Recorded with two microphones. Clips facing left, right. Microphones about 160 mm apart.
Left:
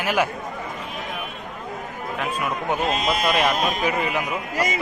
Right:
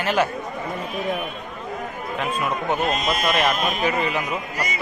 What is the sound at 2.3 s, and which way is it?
Speech, 10° left (ahead or behind).